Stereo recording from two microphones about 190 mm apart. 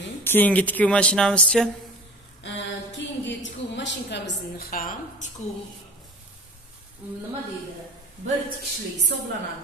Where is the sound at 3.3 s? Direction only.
70° left (ahead or behind); by 4.9 s 45° left (ahead or behind).